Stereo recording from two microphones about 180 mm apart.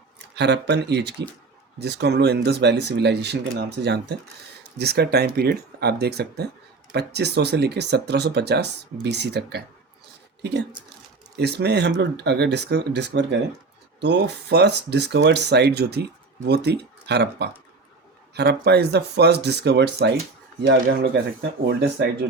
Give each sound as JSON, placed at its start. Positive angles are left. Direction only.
{"t": 0.3, "sound": "speech", "side_deg": -70}
{"t": 11.3, "sound": "speech", "side_deg": -65}